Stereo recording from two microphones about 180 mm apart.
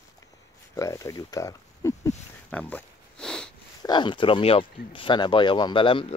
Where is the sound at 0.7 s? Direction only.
15° left (ahead or behind).